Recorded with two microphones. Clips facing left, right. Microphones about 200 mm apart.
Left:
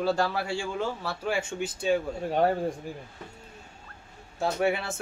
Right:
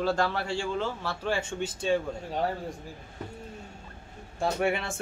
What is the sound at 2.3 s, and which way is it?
Speech, 60° left (ahead or behind).